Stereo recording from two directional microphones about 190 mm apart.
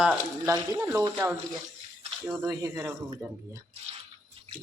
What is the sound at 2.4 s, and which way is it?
Speech, 15° right (ahead or behind).